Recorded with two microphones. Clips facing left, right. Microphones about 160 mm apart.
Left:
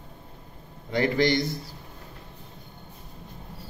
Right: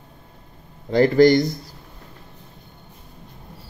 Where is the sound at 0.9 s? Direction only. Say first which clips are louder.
Right 9 dB; 40° right (ahead or behind).